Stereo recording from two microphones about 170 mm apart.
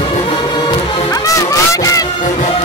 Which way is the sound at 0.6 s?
20° left (ahead or behind).